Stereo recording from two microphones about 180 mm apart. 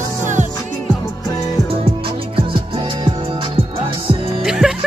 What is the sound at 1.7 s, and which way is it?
Music, 30° right (ahead or behind).